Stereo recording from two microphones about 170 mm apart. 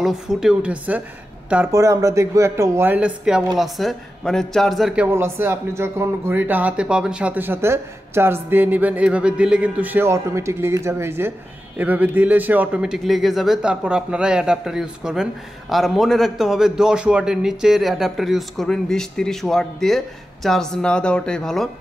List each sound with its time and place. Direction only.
0.0 s a man's voice: 5° right (ahead or behind)